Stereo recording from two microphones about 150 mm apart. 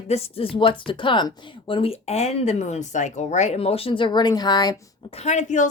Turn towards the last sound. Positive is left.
turn(degrees=55)  # may be behind; listen again after turning